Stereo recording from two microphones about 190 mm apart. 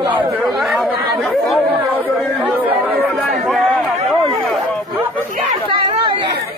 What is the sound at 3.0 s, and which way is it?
Chatter, centre (ahead or behind).